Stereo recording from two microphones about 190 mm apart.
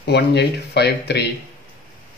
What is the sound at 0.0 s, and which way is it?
Speech, 60° left (ahead or behind).